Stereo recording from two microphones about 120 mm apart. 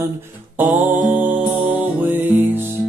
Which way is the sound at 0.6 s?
15° right (ahead or behind).